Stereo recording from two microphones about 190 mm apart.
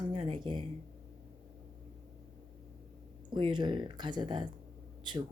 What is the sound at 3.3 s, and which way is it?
Speech, 25° right (ahead or behind).